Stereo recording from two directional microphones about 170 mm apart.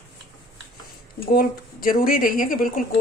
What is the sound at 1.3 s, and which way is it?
A woman's voice, 60° left (ahead or behind).